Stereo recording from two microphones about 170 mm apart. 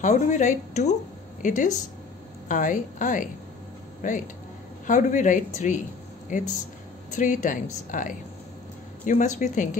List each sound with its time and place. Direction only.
0.0 s speech: 45° left (ahead or behind)